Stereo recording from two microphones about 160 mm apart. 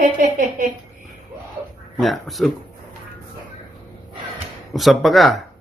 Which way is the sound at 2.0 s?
Centre (ahead or behind).